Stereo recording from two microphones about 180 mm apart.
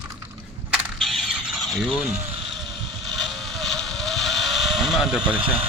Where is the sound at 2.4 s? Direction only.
Centre (ahead or behind).